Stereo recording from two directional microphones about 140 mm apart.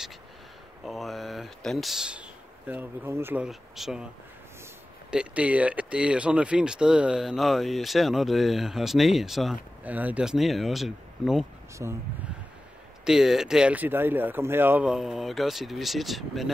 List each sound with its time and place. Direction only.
0.8 s speech: centre (ahead or behind); by 3.4 s 15° right (ahead or behind)
3.4 s speech: 5° right (ahead or behind)
5.1 s speech: 10° right (ahead or behind)
11.8 s speech: 25° right (ahead or behind)
13.0 s speech: 5° right (ahead or behind)